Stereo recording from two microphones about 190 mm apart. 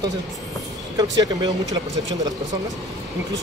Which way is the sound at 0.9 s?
20° right (ahead or behind).